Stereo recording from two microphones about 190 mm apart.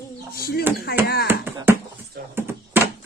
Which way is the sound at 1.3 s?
10° right (ahead or behind).